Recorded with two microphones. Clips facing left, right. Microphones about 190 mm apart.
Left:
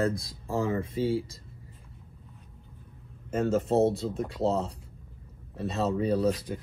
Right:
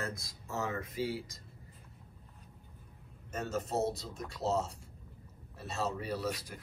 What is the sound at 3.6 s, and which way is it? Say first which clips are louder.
Speech: left 10 dB; 30° left (ahead or behind).